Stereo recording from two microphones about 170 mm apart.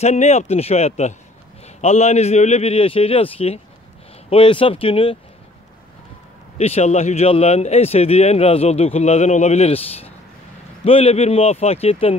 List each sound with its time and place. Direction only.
0.0 s speech: 40° left (ahead or behind)
6.6 s speech: 40° left (ahead or behind)
10.8 s speech: 35° left (ahead or behind)